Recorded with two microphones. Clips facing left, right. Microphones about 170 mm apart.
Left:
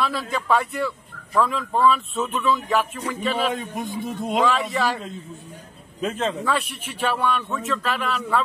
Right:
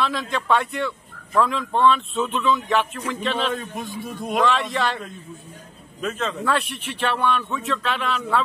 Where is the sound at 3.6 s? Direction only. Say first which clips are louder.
Left 2 dB; 20° left (ahead or behind).